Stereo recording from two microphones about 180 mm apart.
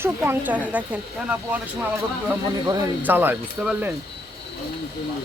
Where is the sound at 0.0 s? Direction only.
10° right (ahead or behind).